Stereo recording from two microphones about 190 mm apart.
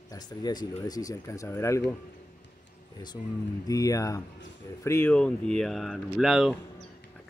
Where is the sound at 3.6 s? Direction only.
20° left (ahead or behind).